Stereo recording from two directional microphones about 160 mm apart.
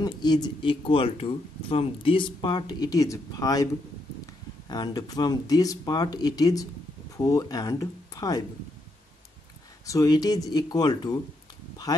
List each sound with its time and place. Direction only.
0.0 s speech: 25° left (ahead or behind)
4.6 s speech: 25° left (ahead or behind)
9.8 s speech: 25° left (ahead or behind)